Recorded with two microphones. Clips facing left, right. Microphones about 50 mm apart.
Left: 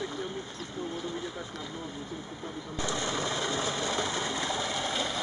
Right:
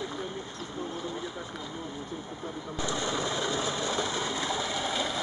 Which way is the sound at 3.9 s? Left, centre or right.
Centre.